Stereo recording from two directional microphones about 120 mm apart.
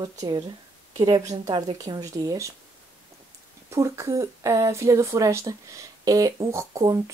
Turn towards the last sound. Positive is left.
turn(degrees=-25)  # may be behind; listen again after turning